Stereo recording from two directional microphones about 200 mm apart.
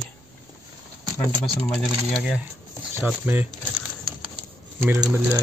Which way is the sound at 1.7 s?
Centre (ahead or behind).